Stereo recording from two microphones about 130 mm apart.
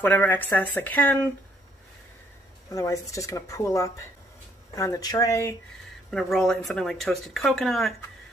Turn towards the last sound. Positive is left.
turn(degrees=0)  # may be behind; listen again after turning